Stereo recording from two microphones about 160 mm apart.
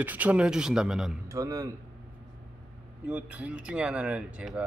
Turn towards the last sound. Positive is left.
turn(degrees=-5)  # may be behind; listen again after turning